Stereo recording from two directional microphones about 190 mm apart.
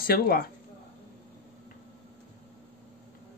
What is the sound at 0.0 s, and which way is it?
Speech, 50° left (ahead or behind).